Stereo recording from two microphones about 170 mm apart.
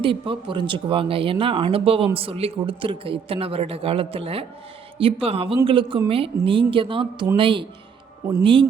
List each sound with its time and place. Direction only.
0.0 s speech: 30° right (ahead or behind)